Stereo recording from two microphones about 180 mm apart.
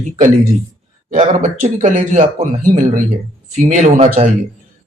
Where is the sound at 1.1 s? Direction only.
40° right (ahead or behind).